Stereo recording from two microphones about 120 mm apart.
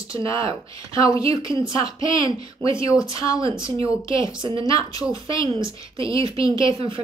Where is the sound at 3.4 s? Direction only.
45° right (ahead or behind).